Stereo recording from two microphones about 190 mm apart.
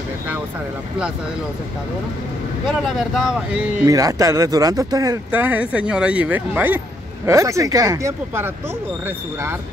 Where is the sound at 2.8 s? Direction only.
5° right (ahead or behind).